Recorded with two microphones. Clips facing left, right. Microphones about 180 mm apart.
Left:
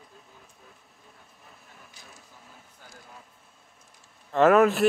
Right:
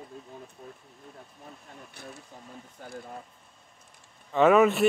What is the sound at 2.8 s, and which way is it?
Speech, 55° right (ahead or behind).